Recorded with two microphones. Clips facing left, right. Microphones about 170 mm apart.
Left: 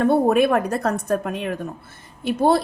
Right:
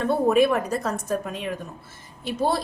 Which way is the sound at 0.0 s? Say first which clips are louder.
Left 3 dB; 55° left (ahead or behind).